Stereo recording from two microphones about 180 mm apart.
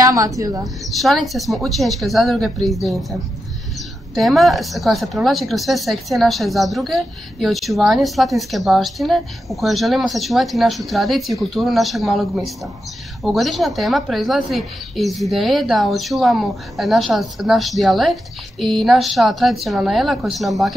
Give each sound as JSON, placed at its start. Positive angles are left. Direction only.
{"t": 0.0, "sound": "a woman's voice", "side_deg": -20}
{"t": 0.8, "sound": "speech", "side_deg": 0}